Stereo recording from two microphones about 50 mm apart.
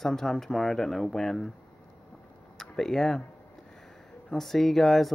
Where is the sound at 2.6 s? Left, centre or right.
Centre.